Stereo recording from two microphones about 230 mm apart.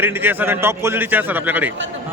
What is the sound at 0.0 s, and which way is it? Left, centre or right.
A man's voice, centre.